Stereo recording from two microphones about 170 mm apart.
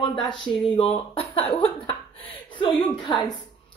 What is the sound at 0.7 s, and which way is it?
Speech, 35° left (ahead or behind).